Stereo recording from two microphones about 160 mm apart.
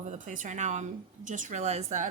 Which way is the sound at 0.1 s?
50° right (ahead or behind).